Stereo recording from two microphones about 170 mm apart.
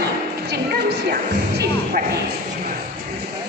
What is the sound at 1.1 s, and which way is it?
Music, 65° right (ahead or behind).